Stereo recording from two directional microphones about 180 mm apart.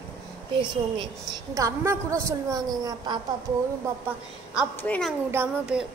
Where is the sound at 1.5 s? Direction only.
15° right (ahead or behind).